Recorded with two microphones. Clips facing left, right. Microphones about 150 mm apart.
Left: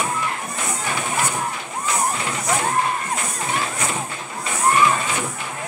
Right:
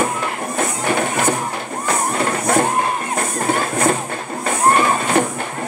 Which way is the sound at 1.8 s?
55° right (ahead or behind).